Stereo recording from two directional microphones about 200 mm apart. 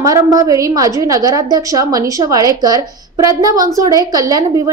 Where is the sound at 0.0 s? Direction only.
15° right (ahead or behind).